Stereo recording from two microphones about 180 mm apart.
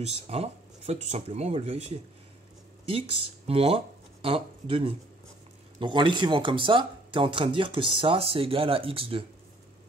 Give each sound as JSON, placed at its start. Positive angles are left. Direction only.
{"t": 0.0, "sound": "speech", "side_deg": -35}